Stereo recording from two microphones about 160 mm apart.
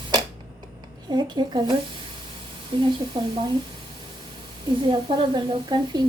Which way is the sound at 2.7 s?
30° right (ahead or behind).